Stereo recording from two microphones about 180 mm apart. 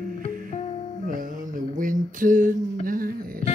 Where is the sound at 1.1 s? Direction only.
45° right (ahead or behind).